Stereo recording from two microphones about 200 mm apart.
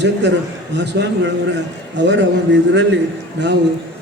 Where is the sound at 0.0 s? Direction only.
60° right (ahead or behind).